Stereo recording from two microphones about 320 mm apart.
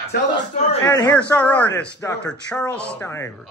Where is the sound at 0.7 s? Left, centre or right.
Centre.